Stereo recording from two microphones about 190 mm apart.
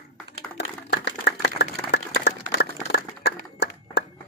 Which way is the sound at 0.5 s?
65° left (ahead or behind).